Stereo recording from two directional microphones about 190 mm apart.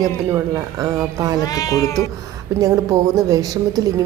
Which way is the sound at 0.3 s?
15° right (ahead or behind).